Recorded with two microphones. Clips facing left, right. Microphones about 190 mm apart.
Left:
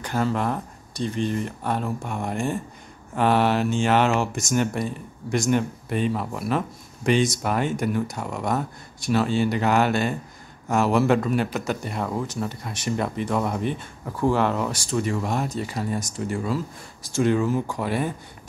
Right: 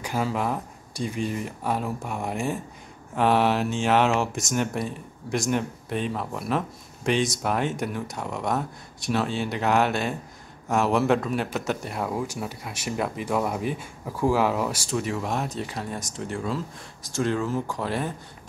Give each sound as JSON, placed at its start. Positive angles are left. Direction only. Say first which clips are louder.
{"t": 0.0, "sound": "speech", "louder": "left 2 dB", "side_deg": -5}